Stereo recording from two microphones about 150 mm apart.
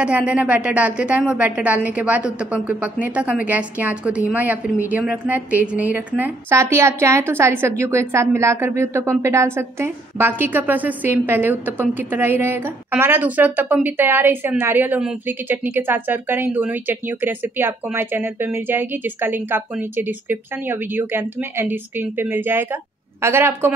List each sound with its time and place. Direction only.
0.0 s a woman's voice: 10° right (ahead or behind)